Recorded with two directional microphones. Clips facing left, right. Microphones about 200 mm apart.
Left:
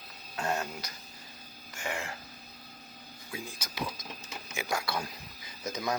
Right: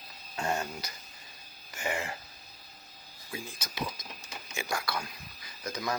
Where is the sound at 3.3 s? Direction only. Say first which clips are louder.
Even; 5° left (ahead or behind).